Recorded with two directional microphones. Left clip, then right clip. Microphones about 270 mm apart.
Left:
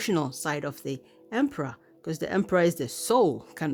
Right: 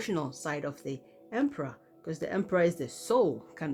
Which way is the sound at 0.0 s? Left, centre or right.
Left.